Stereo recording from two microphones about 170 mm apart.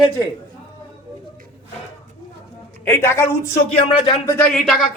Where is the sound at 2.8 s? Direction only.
15° left (ahead or behind).